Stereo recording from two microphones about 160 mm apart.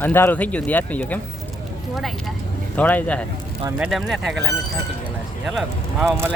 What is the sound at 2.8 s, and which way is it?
Speech, 10° left (ahead or behind).